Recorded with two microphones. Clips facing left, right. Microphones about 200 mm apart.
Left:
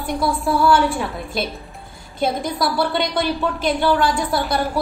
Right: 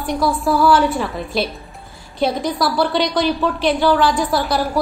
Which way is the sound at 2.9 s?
55° left (ahead or behind).